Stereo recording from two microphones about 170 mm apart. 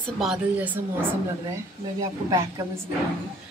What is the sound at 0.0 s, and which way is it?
Speech, centre (ahead or behind).